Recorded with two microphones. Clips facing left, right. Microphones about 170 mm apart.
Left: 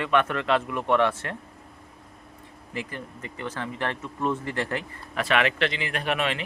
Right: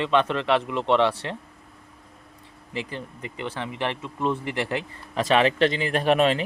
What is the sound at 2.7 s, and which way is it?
A man's voice, 25° right (ahead or behind).